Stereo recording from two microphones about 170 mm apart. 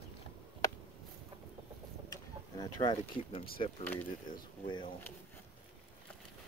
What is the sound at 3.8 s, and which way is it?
Speech, 10° left (ahead or behind).